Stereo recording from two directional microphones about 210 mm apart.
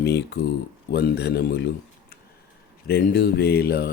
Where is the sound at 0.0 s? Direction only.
50° left (ahead or behind).